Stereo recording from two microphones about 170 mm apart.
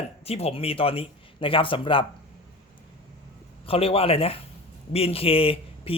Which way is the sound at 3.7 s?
35° left (ahead or behind).